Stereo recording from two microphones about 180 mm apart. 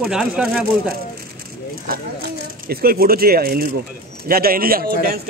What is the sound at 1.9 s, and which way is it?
Speech, 55° right (ahead or behind).